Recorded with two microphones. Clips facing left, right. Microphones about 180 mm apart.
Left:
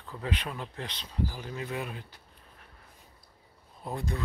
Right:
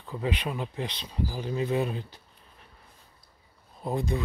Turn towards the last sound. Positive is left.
turn(degrees=-15)  # may be behind; listen again after turning